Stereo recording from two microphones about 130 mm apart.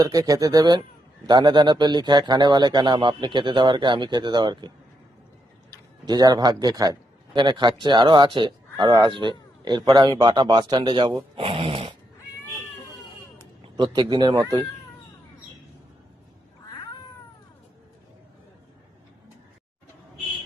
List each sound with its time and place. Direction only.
0.0 s speech: 25° right (ahead or behind)
6.1 s speech: 30° right (ahead or behind)
11.3 s a sound: 45° right (ahead or behind)
13.6 s speech: 35° right (ahead or behind)